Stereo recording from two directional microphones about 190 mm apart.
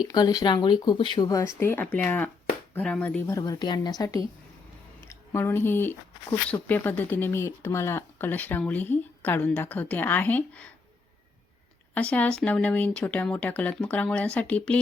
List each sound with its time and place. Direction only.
0.0 s speech: 20° left (ahead or behind)
11.9 s speech: 5° left (ahead or behind)